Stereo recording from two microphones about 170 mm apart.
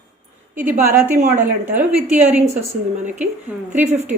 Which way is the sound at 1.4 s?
5° right (ahead or behind).